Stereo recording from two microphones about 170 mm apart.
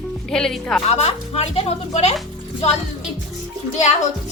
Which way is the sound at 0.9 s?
40° left (ahead or behind).